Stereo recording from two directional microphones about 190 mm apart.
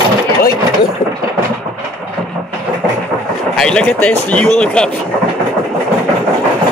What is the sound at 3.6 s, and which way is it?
Speech, 5° left (ahead or behind).